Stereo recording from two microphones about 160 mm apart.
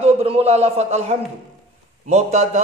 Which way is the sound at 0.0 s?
40° right (ahead or behind).